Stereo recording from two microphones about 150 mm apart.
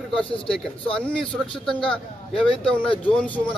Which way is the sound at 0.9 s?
5° left (ahead or behind).